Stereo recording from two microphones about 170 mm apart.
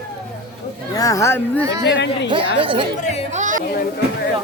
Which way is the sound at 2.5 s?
30° right (ahead or behind).